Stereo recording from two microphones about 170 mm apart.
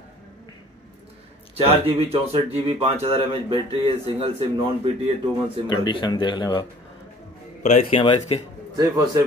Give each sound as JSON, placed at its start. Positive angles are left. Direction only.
{"t": 1.6, "sound": "speech", "side_deg": -35}
{"t": 5.7, "sound": "speech", "side_deg": 25}
{"t": 7.6, "sound": "speech", "side_deg": 40}
{"t": 8.0, "sound": "speech", "side_deg": 30}
{"t": 8.7, "sound": "a man's voice", "side_deg": -20}